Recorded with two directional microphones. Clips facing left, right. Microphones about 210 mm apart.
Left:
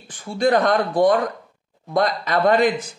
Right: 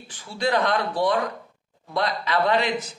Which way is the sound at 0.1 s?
50° left (ahead or behind).